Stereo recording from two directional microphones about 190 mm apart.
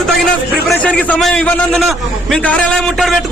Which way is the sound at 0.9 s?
5° left (ahead or behind).